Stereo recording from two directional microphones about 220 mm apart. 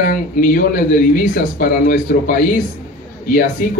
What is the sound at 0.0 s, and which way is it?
Speech, 40° left (ahead or behind).